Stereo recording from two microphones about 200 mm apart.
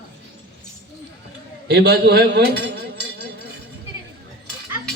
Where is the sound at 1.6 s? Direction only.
55° right (ahead or behind).